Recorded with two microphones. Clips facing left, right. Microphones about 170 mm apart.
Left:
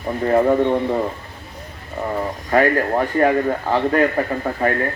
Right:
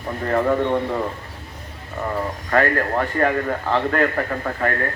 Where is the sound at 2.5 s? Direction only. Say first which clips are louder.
Left 3 dB; 15° left (ahead or behind).